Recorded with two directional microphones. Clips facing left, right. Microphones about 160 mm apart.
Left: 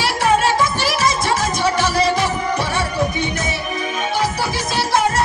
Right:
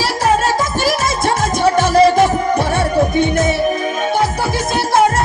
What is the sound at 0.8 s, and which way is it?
Music, 50° right (ahead or behind).